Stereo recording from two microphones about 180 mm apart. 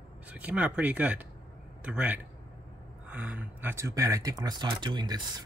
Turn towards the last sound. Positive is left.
turn(degrees=-25)  # may be behind; listen again after turning